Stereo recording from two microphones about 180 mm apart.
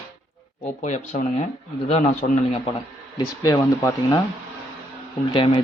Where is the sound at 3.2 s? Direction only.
20° left (ahead or behind).